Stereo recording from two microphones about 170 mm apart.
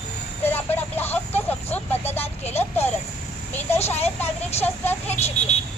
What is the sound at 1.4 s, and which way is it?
Vehicle, 10° left (ahead or behind).